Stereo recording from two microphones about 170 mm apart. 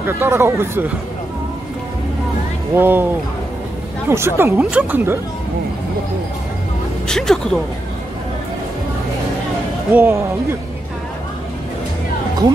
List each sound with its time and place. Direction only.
0.0 s speech: 15° right (ahead or behind)
2.7 s speech: 10° right (ahead or behind)
4.1 s speech: 15° right (ahead or behind)
7.1 s speech: 5° left (ahead or behind)
9.9 s speech: 10° right (ahead or behind)
12.4 s speech: 25° right (ahead or behind)